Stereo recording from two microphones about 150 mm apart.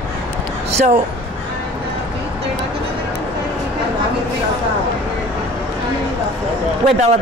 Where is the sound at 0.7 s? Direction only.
50° right (ahead or behind).